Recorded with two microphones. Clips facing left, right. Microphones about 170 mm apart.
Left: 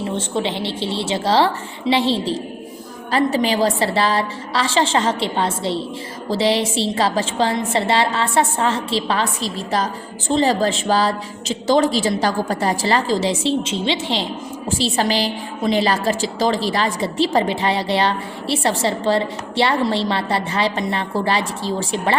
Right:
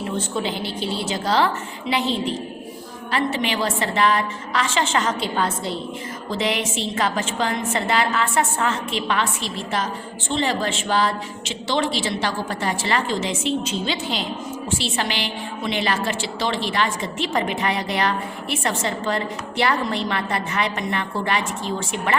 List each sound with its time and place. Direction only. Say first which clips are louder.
0.2 s a woman's voice: left 3 dB; 25° left (ahead or behind)